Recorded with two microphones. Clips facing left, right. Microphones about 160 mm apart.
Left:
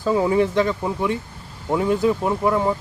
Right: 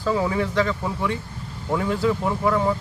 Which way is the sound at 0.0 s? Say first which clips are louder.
Left 4 dB; 20° left (ahead or behind).